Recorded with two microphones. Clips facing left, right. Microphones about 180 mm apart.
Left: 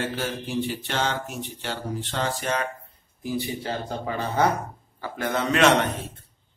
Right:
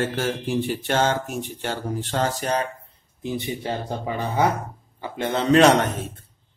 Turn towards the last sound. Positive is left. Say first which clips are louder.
# right 4 dB
turn(degrees=-40)  # may be behind; listen again after turning